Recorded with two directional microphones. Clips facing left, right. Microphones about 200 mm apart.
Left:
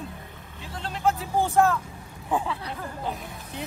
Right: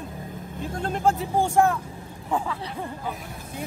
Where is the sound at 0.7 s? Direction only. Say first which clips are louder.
Right 6 dB; 50° right (ahead or behind).